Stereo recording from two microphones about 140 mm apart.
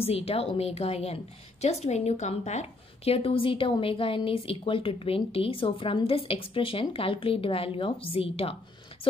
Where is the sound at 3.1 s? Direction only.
40° left (ahead or behind).